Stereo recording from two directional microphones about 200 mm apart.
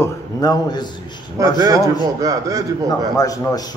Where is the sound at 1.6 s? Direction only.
15° right (ahead or behind).